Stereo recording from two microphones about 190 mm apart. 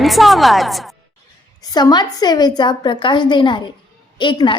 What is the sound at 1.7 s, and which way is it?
A woman's voice, 20° left (ahead or behind).